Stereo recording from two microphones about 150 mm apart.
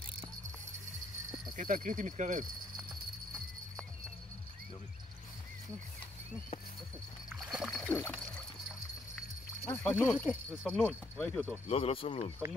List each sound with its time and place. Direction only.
1.6 s speech: 60° right (ahead or behind)
7.3 s splash: centre (ahead or behind)
8.0 s dog: centre (ahead or behind)
9.7 s speech: 10° left (ahead or behind)
11.6 s speech: 40° left (ahead or behind)